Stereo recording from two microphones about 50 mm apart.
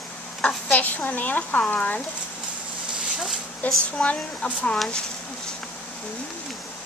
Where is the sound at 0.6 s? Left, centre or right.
Left.